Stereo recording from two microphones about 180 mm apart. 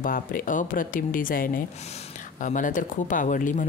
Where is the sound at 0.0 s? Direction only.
50° left (ahead or behind).